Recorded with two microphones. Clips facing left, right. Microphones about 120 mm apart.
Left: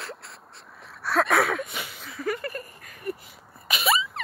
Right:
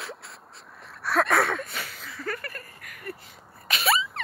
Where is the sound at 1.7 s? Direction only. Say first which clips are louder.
Left 1 dB; 10° left (ahead or behind).